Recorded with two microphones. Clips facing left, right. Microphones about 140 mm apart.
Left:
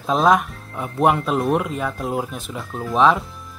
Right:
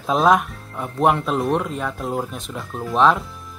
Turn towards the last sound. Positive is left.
turn(degrees=0)  # may be behind; listen again after turning